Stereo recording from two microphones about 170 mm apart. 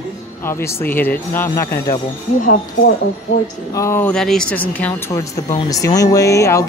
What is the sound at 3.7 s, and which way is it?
Speech, 15° left (ahead or behind).